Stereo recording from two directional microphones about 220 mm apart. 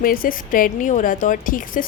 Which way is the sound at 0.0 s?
40° left (ahead or behind).